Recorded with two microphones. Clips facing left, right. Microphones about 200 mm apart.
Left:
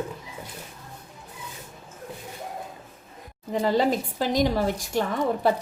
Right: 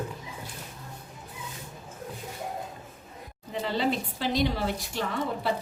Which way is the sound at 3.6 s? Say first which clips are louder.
Left 5 dB; 45° left (ahead or behind).